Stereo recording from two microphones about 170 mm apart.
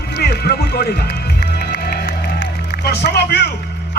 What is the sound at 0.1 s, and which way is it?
Music, 75° left (ahead or behind).